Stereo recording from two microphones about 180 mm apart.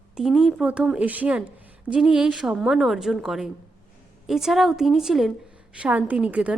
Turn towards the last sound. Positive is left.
turn(degrees=-5)  # may be behind; listen again after turning